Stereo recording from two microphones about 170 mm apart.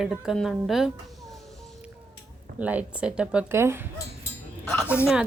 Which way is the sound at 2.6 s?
10° right (ahead or behind).